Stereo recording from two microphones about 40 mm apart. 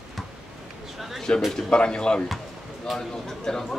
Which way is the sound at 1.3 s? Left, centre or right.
Left.